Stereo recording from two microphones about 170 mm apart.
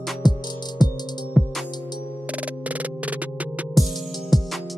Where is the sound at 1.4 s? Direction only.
Centre (ahead or behind).